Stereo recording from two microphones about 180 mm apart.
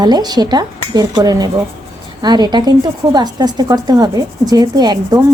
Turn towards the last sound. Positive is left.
turn(degrees=-20)  # may be behind; listen again after turning